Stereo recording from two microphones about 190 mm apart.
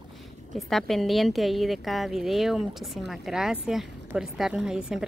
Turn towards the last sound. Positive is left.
turn(degrees=-5)  # may be behind; listen again after turning